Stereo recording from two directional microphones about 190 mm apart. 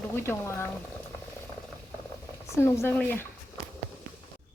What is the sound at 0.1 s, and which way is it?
Speech, 10° left (ahead or behind).